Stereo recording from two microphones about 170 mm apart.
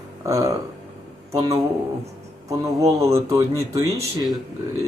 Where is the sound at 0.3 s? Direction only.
20° right (ahead or behind).